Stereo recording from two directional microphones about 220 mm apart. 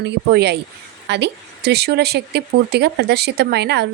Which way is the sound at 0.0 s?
50° right (ahead or behind).